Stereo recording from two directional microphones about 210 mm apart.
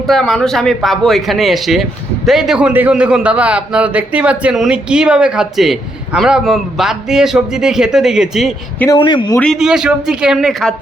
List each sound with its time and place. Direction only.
0.1 s speech: 5° left (ahead or behind)
8.9 s speech: 20° left (ahead or behind)
9.4 s speech: centre (ahead or behind)